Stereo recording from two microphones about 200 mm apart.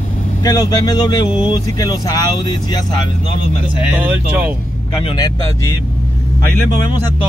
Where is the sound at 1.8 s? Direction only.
20° left (ahead or behind).